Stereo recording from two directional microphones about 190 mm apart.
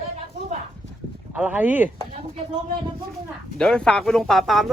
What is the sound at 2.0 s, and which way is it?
Speech, 40° right (ahead or behind).